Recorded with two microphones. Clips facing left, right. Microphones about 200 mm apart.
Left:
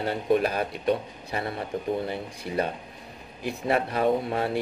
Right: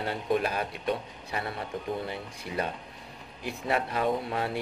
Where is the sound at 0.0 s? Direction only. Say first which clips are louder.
Left 4 dB; 40° left (ahead or behind).